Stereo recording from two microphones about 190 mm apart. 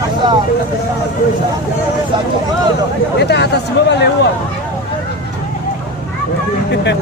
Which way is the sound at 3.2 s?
60° left (ahead or behind).